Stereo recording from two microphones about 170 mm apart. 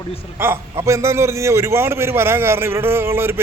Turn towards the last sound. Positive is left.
turn(degrees=-15)  # may be behind; listen again after turning